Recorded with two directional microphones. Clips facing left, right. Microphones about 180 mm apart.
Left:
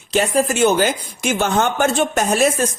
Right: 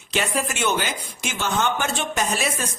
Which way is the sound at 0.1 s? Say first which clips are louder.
Left 8 dB; 40° left (ahead or behind).